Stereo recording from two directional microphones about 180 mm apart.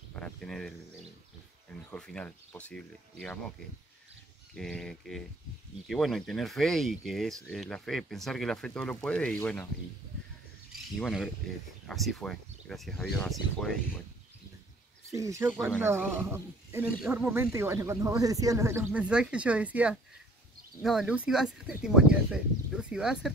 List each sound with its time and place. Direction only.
0.1 s a sound: 5° left (ahead or behind)
1.7 s speech: 5° left (ahead or behind)
4.6 s speech: 5° left (ahead or behind)
11.0 s speech: centre (ahead or behind)
15.0 s speech: 15° right (ahead or behind)